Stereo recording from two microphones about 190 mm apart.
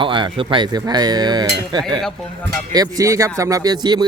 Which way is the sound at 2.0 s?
5° left (ahead or behind).